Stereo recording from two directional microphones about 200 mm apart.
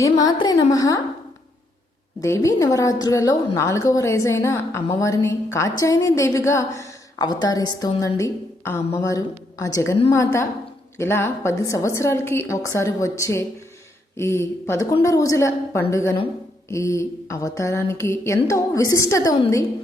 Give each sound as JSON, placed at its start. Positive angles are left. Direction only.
{"t": 0.0, "sound": "a woman's voice", "side_deg": 20}
{"t": 2.2, "sound": "a woman's voice", "side_deg": 15}
{"t": 10.9, "sound": "a woman's voice", "side_deg": 15}